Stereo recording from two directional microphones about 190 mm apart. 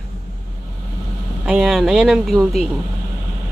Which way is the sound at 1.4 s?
Centre (ahead or behind).